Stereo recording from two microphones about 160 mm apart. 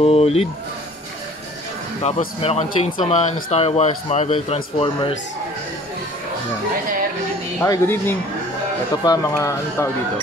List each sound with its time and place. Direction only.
0.0 s a man's voice: 40° left (ahead or behind)
2.0 s a man's voice: 45° left (ahead or behind)
7.6 s speech: 15° left (ahead or behind)